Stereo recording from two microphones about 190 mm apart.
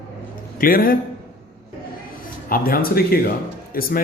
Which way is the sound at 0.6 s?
50° left (ahead or behind).